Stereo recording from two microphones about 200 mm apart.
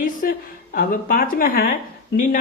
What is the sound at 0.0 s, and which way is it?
Speech, 45° left (ahead or behind).